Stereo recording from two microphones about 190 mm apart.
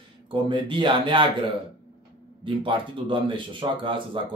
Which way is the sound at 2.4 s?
25° right (ahead or behind).